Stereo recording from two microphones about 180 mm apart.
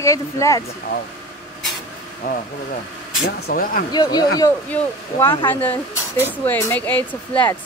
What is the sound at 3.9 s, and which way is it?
Speech, 20° left (ahead or behind).